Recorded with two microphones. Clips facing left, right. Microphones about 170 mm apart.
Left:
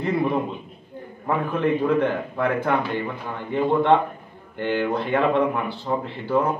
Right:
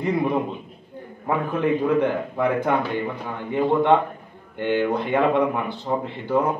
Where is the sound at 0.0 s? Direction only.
15° right (ahead or behind).